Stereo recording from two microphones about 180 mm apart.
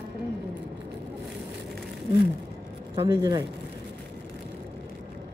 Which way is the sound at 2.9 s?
20° right (ahead or behind).